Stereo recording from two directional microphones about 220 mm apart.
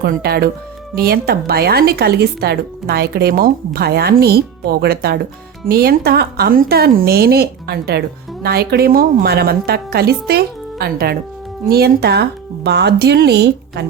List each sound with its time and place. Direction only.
0.0 s a woman's voice: 45° right (ahead or behind)